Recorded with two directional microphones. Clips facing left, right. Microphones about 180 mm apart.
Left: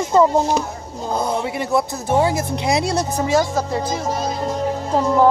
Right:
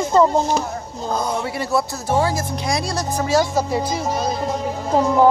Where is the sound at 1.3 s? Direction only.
20° left (ahead or behind).